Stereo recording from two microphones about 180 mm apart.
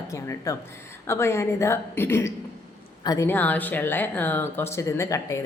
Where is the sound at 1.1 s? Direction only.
15° left (ahead or behind).